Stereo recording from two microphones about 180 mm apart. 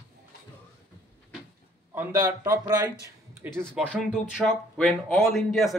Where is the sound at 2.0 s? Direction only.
15° right (ahead or behind).